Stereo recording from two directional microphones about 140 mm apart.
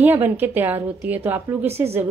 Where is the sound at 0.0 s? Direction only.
15° right (ahead or behind).